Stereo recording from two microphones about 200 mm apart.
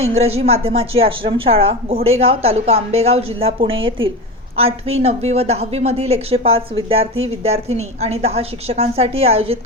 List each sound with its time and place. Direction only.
0.0 s a woman's voice: 30° right (ahead or behind)